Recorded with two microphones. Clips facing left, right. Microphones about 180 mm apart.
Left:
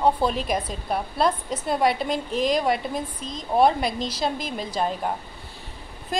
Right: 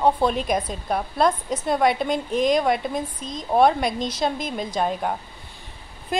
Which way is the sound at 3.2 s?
45° right (ahead or behind).